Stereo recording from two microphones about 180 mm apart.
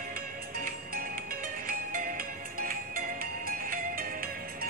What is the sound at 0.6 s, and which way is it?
Music, 50° right (ahead or behind).